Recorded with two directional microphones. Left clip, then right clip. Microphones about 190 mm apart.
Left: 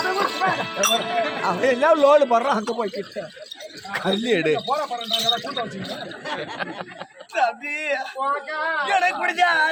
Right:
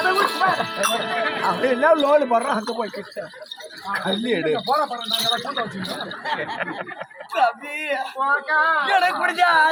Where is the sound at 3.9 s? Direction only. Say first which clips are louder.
Left 1 dB; 55° left (ahead or behind).